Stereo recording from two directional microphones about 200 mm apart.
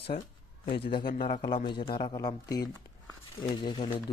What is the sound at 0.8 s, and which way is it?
Speech, 25° left (ahead or behind).